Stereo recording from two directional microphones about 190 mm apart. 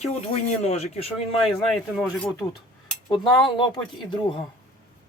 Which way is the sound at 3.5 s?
25° left (ahead or behind).